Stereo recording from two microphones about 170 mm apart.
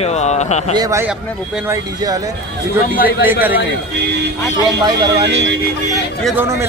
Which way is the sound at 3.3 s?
10° right (ahead or behind).